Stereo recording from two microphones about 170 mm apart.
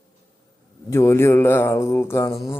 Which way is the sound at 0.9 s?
15° left (ahead or behind).